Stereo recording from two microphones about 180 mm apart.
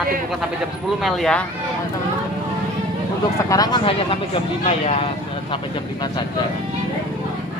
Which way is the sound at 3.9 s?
30° left (ahead or behind).